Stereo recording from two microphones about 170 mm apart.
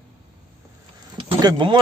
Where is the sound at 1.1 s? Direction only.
30° right (ahead or behind).